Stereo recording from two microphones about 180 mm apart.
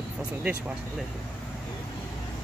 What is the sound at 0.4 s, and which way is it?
Speech, 5° right (ahead or behind).